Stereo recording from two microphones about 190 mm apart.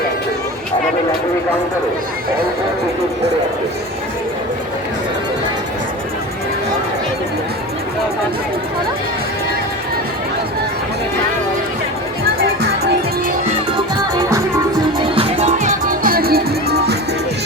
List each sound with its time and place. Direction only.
14.2 s music: 15° right (ahead or behind)
14.9 s music: 30° right (ahead or behind)
15.9 s music: 50° right (ahead or behind)